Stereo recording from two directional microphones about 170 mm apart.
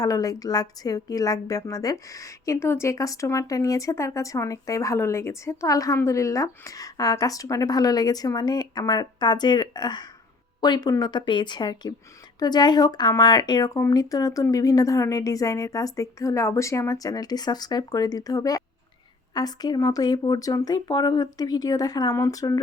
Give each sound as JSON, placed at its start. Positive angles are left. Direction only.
{"t": 0.0, "sound": "a woman's voice", "side_deg": 20}